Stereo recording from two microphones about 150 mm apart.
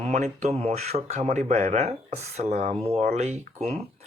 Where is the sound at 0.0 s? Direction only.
50° right (ahead or behind).